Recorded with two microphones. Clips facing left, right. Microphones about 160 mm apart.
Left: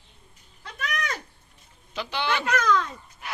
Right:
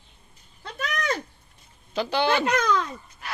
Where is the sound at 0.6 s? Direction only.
30° right (ahead or behind).